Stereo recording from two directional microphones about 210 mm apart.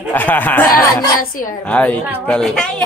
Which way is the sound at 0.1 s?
10° left (ahead or behind).